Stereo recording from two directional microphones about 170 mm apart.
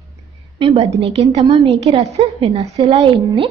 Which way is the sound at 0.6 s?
35° right (ahead or behind).